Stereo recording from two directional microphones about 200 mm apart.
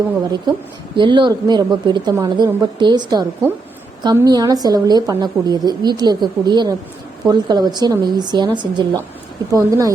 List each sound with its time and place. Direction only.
0.9 s a woman's voice: 25° right (ahead or behind)